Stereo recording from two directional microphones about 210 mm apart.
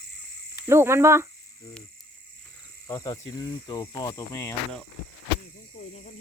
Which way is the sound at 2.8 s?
15° left (ahead or behind).